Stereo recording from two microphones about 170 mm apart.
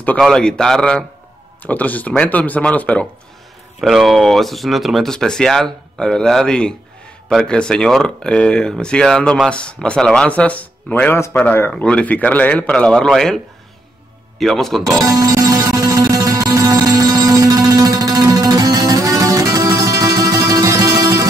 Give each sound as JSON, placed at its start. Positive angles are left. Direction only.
{"t": 0.0, "sound": "speech", "side_deg": 5}
{"t": 14.4, "sound": "speech", "side_deg": 0}
{"t": 14.8, "sound": "music", "side_deg": -20}